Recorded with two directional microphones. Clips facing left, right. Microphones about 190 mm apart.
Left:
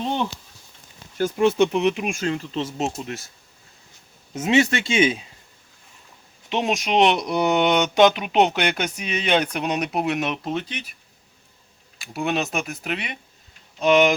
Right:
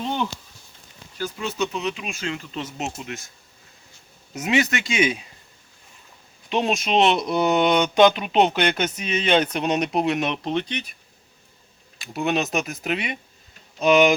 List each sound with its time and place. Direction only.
1.2 s speech: 55° left (ahead or behind)
2.3 s speech: 35° left (ahead or behind)
4.4 s speech: 25° left (ahead or behind)
6.5 s speech: 15° left (ahead or behind)
12.1 s speech: centre (ahead or behind)